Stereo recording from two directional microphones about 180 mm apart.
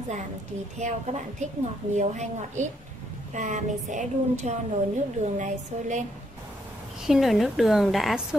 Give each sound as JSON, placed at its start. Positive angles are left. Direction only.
{"t": 0.7, "sound": "a woman's voice", "side_deg": -40}
{"t": 7.1, "sound": "a woman's voice", "side_deg": 0}